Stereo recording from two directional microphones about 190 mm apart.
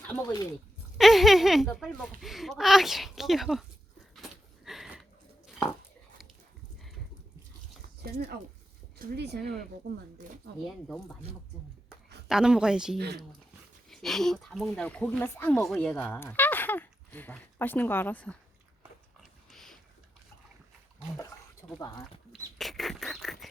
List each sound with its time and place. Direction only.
0.1 s speech: 15° left (ahead or behind)
0.9 s speech: centre (ahead or behind)
4.1 s a sound: centre (ahead or behind)
8.1 s speech: 60° right (ahead or behind)
12.3 s speech: 5° right (ahead or behind)
13.0 s speech: 60° right (ahead or behind)
13.9 s speech: centre (ahead or behind)
19.5 s a sound: centre (ahead or behind)
21.7 s speech: 15° left (ahead or behind)
22.3 s rodents: centre (ahead or behind)